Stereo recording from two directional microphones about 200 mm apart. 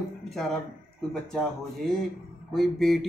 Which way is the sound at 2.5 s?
Centre (ahead or behind).